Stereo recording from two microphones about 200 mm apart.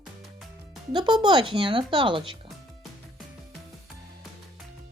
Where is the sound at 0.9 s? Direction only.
20° right (ahead or behind).